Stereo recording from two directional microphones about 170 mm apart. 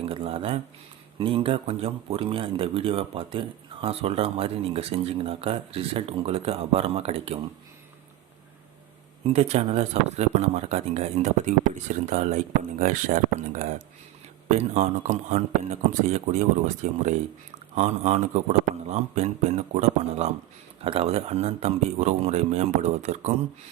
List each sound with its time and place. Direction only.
0.0 s speech: 35° right (ahead or behind)
9.2 s speech: 40° right (ahead or behind)